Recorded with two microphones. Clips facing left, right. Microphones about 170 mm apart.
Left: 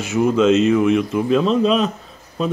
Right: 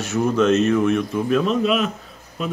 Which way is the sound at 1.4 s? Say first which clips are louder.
Left 4 dB; 30° left (ahead or behind).